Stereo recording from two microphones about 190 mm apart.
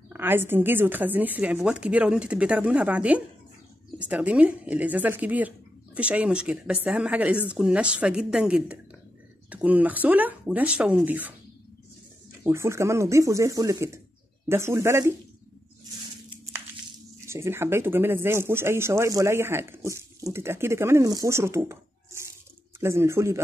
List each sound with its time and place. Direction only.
0.1 s speech: 10° right (ahead or behind)
12.4 s speech: 15° right (ahead or behind)
17.3 s speech: 15° right (ahead or behind)
22.8 s speech: 15° right (ahead or behind)